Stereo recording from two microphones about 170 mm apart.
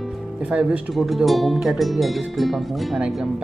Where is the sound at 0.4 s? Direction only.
5° right (ahead or behind).